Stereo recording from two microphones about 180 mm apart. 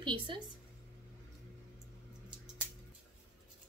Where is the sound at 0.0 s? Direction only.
25° right (ahead or behind).